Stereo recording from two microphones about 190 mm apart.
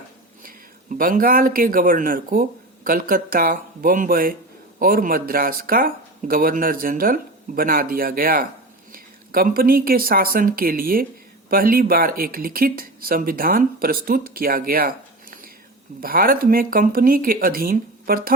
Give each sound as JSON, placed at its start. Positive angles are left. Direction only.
{"t": 0.4, "sound": "speech", "side_deg": -45}